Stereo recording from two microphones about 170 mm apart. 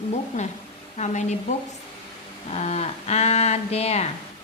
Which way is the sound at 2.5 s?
40° left (ahead or behind).